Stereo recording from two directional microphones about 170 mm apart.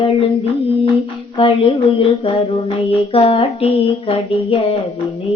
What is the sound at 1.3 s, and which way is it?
Speech, 30° left (ahead or behind).